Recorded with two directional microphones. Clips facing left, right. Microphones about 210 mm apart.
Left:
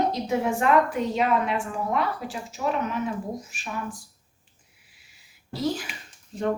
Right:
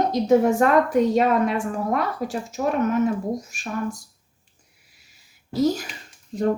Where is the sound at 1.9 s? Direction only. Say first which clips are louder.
Right 1 dB; 45° right (ahead or behind).